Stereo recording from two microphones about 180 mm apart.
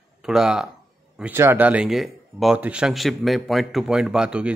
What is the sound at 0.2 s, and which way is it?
Speech, 5° right (ahead or behind).